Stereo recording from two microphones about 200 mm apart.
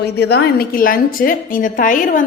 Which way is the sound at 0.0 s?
55° left (ahead or behind).